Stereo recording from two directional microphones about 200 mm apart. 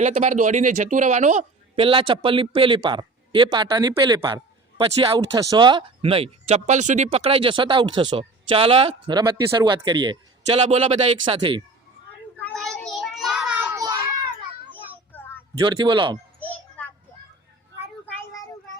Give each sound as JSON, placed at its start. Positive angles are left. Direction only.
{"t": 0.0, "sound": "speech", "side_deg": -40}
{"t": 12.4, "sound": "child singing", "side_deg": 0}
{"t": 13.7, "sound": "child singing", "side_deg": -20}
{"t": 15.1, "sound": "a sound", "side_deg": 10}
{"t": 15.6, "sound": "speech", "side_deg": -25}
{"t": 16.4, "sound": "a sound", "side_deg": 5}
{"t": 18.2, "sound": "child singing", "side_deg": 15}